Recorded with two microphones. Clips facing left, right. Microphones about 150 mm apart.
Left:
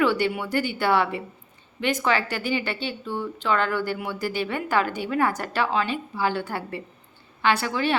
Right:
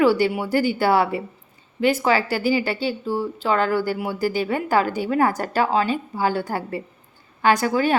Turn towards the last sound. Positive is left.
turn(degrees=-40)  # may be behind; listen again after turning